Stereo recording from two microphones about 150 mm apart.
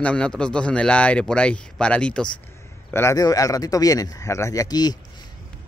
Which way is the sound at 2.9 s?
15° left (ahead or behind).